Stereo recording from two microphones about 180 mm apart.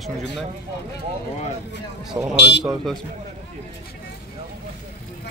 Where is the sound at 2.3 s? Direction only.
70° left (ahead or behind).